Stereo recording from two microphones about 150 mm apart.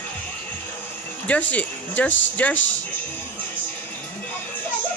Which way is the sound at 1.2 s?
10° left (ahead or behind).